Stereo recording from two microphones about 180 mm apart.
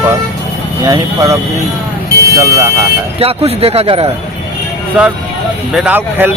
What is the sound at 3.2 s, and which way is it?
Speech, 35° right (ahead or behind).